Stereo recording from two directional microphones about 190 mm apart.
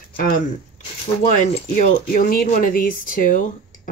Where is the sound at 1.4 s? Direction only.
40° left (ahead or behind).